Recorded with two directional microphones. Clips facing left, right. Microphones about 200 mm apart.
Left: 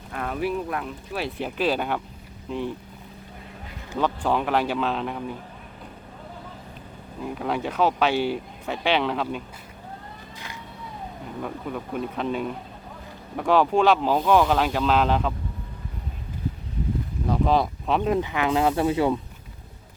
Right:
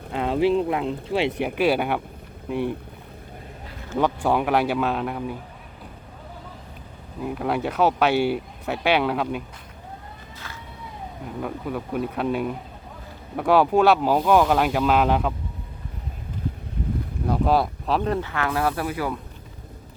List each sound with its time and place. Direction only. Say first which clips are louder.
0.1 s speech: right 7 dB; 25° right (ahead or behind)
1.4 s speech: left 1 dB; 10° right (ahead or behind)
3.9 s speech: right 2 dB; 10° right (ahead or behind)
7.2 s speech: right 2 dB; 5° right (ahead or behind)
11.4 s speech: right 3 dB; 5° right (ahead or behind)
17.2 s a sound: right 1 dB; 5° right (ahead or behind)
18.1 s speech: left 2 dB; 15° left (ahead or behind)